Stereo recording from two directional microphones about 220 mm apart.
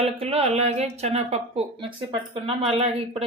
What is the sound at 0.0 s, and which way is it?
Speech, 25° right (ahead or behind).